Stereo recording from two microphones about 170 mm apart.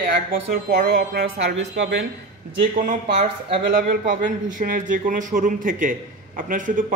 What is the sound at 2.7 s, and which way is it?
Speech, 45° right (ahead or behind).